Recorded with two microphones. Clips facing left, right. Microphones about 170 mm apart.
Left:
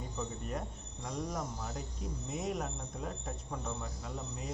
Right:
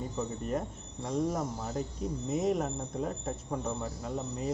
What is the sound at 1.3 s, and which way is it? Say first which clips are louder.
Speech: right 5 dB; 20° right (ahead or behind).